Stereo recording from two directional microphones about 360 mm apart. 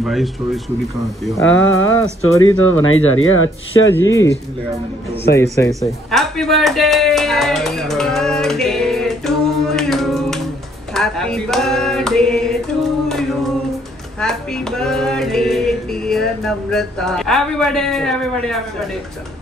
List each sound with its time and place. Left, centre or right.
0.0 s speech: centre
1.4 s speech: left
3.9 s speech: centre
5.4 s speech: centre
11.0 s a sound: centre
14.2 s music: centre